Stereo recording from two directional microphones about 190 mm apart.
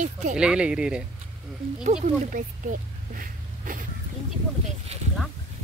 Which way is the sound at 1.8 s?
40° right (ahead or behind).